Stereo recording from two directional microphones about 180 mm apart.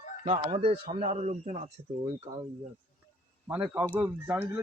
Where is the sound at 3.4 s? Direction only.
10° right (ahead or behind).